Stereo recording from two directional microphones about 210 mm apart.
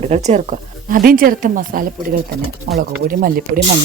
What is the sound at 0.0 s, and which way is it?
Speech, 35° right (ahead or behind).